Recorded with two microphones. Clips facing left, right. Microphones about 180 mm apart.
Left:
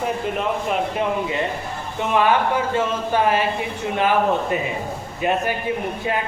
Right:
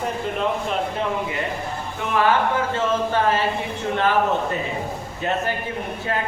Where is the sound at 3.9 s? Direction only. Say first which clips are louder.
Left 1 dB; 15° left (ahead or behind).